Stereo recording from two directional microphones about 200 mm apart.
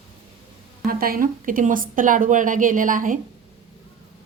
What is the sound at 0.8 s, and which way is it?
Speech, 45° right (ahead or behind).